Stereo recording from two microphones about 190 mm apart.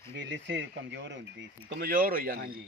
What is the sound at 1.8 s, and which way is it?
Speech, 50° right (ahead or behind).